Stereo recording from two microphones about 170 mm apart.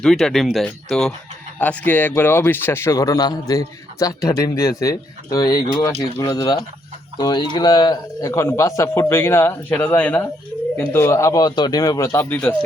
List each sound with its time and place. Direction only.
0.0 s a man's voice: 5° left (ahead or behind)